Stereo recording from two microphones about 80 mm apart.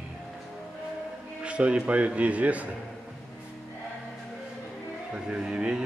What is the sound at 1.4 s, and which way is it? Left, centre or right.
A man's voice, centre.